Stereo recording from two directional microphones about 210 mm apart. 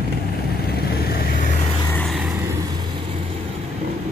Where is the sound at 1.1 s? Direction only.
40° left (ahead or behind).